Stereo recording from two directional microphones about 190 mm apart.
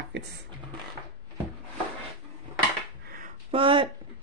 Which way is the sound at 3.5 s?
25° right (ahead or behind).